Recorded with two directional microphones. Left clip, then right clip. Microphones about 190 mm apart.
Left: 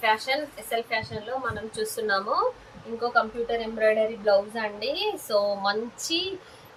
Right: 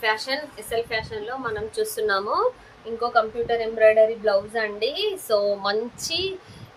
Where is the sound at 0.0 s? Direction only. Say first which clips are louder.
Even; 50° right (ahead or behind).